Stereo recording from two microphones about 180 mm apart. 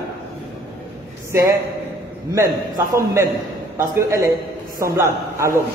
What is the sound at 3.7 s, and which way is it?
A man's voice, 15° right (ahead or behind).